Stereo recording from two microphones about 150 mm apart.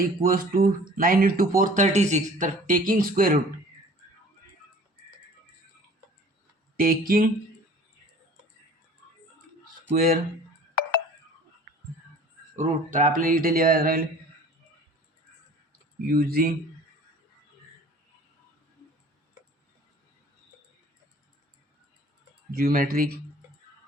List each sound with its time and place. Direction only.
0.2 s speech: 70° right (ahead or behind)
6.7 s speech: 75° right (ahead or behind)
9.9 s speech: 75° right (ahead or behind)
12.5 s speech: 55° right (ahead or behind); by 14.0 s 80° right
16.1 s speech: 85° right
22.5 s speech: 75° right (ahead or behind)